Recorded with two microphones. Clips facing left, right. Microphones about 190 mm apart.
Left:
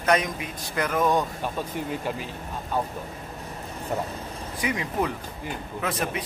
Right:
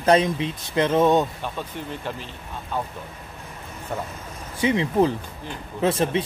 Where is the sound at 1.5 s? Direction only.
10° left (ahead or behind).